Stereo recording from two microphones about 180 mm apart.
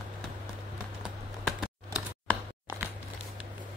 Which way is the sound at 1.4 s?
Centre (ahead or behind).